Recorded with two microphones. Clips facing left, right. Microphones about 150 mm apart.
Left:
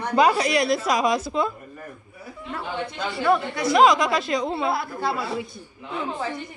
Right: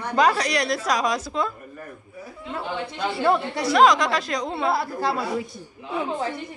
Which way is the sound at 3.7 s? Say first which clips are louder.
Even; 5° left (ahead or behind).